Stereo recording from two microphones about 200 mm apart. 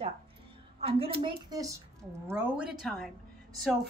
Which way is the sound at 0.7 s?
30° right (ahead or behind).